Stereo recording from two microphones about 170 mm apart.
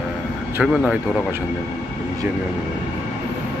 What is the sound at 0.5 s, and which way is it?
Speech, 5° right (ahead or behind).